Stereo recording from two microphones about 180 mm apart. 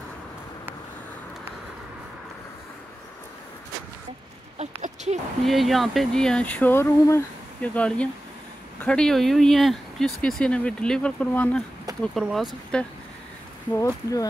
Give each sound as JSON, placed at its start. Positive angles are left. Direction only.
{"t": 4.6, "sound": "a sound", "side_deg": -40}
{"t": 5.4, "sound": "speech", "side_deg": 0}
{"t": 13.7, "sound": "speech", "side_deg": 15}